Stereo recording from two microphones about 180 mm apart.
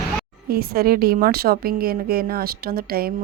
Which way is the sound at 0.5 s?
55° right (ahead or behind).